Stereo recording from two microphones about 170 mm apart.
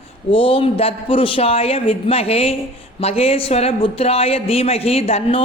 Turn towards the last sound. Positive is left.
turn(degrees=35)  # may be behind; listen again after turning